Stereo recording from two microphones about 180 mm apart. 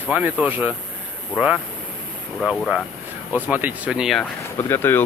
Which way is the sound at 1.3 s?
15° left (ahead or behind).